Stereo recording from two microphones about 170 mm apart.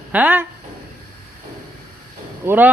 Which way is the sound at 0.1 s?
10° right (ahead or behind).